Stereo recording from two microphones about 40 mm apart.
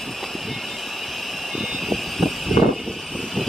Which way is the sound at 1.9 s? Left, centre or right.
Centre.